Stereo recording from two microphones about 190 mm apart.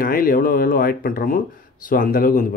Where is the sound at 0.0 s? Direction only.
50° left (ahead or behind).